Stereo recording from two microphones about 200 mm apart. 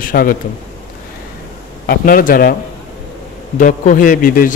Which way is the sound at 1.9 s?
45° left (ahead or behind).